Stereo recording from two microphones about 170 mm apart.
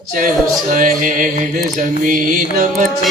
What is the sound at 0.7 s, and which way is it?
Music, 50° right (ahead or behind).